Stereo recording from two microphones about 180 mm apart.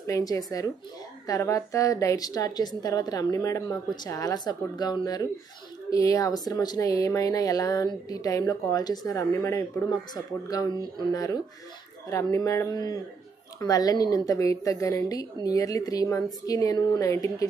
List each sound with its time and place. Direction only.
0.0 s a woman's voice: 20° left (ahead or behind)
12.1 s a woman's voice: 15° left (ahead or behind)